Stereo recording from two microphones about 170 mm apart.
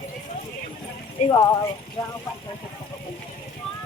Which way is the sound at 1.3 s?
25° left (ahead or behind).